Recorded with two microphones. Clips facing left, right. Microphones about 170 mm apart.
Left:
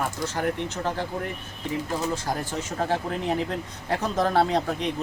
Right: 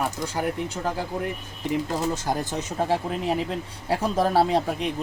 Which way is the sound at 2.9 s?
10° right (ahead or behind).